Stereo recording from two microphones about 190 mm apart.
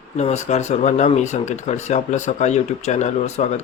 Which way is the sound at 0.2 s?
35° left (ahead or behind).